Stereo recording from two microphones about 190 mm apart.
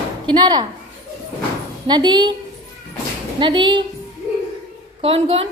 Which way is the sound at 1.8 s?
25° right (ahead or behind).